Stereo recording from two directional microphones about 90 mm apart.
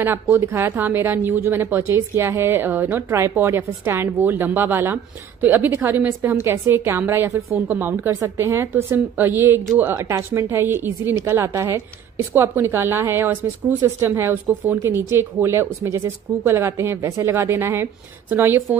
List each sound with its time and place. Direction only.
0.0 s a woman's voice: 25° right (ahead or behind)